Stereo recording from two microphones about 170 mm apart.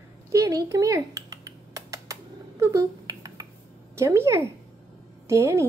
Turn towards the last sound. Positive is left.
turn(degrees=-15)  # may be behind; listen again after turning